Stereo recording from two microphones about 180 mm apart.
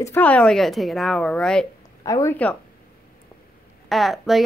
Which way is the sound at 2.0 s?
20° left (ahead or behind).